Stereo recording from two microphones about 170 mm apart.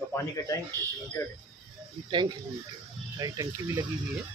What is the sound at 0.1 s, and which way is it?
Speech, 15° left (ahead or behind).